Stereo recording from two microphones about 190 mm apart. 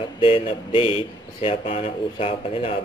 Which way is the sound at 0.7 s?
30° left (ahead or behind).